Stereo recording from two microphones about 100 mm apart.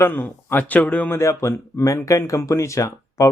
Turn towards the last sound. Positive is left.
turn(degrees=30)  # may be behind; listen again after turning